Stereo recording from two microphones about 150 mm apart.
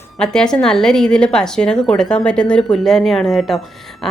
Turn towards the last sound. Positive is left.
turn(degrees=0)  # may be behind; listen again after turning